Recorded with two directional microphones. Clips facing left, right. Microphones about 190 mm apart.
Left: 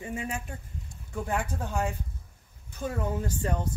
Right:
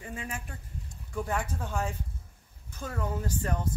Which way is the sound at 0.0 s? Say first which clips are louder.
Left 5 dB; 25° left (ahead or behind).